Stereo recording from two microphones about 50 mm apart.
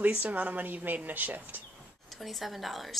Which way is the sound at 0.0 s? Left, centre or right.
Right.